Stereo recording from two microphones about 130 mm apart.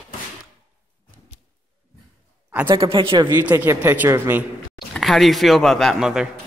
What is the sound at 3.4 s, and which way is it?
Speech, 10° right (ahead or behind).